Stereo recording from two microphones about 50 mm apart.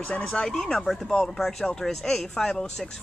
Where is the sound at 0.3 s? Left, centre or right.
Centre.